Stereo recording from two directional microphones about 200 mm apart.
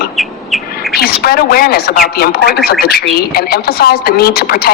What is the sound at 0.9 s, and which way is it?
Speech, 50° left (ahead or behind).